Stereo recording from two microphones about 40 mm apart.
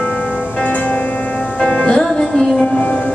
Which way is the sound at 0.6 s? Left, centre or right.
Left.